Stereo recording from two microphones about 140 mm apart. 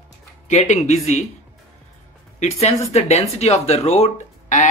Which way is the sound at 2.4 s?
55° left (ahead or behind).